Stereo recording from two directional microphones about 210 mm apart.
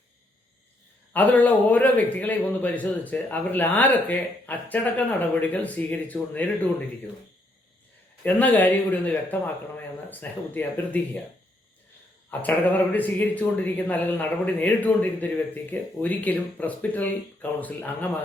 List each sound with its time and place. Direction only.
1.1 s a man's voice: 10° left (ahead or behind)
8.2 s a man's voice: 5° left (ahead or behind)
12.3 s a man's voice: 10° left (ahead or behind)